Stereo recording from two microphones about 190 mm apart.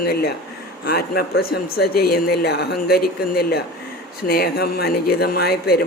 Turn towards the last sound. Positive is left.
turn(degrees=55)  # may be behind; listen again after turning